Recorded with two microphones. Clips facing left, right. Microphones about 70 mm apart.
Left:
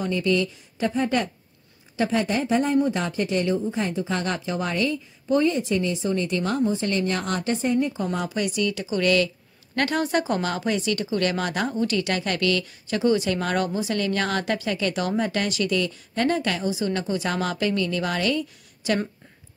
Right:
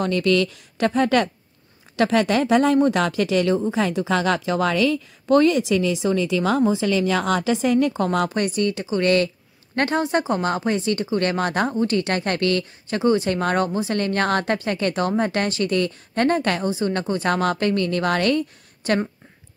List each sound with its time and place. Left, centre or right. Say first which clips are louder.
0.0 s a woman's voice: right 4 dB; right
7.5 s a woman's voice: right 2 dB; right
8.3 s speech: right 3 dB; right
9.8 s a woman's voice: right 2 dB; right